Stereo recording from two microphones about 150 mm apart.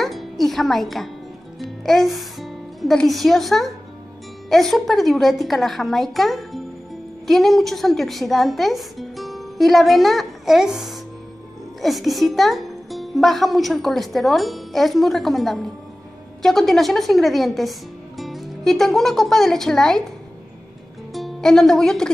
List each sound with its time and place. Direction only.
0.0 s music: centre (ahead or behind)
1.6 s a woman's voice: centre (ahead or behind)
21.1 s speech: centre (ahead or behind)